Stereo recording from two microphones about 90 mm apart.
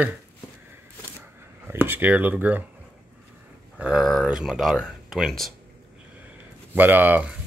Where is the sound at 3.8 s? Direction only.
5° right (ahead or behind).